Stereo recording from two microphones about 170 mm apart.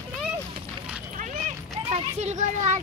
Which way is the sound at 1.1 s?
45° right (ahead or behind).